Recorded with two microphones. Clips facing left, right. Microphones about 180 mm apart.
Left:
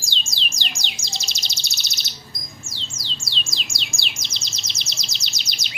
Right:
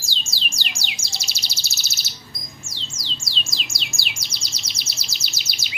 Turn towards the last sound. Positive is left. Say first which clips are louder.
# even
turn(degrees=-5)  # may be behind; listen again after turning